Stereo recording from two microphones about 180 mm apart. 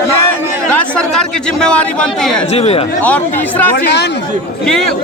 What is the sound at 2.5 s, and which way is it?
Speech, 35° left (ahead or behind).